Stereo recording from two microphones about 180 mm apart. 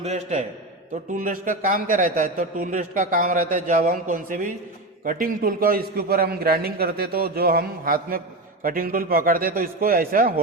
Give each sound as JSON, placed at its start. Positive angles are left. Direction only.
{"t": 0.0, "sound": "a man's voice", "side_deg": -40}